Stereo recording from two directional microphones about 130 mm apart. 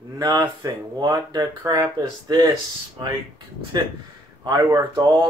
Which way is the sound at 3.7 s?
30° right (ahead or behind).